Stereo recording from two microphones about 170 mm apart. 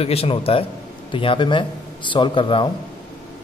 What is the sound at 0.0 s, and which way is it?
A man's voice, 35° left (ahead or behind).